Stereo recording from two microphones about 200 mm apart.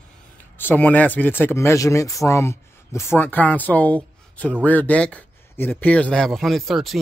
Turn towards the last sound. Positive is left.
turn(degrees=0)  # may be behind; listen again after turning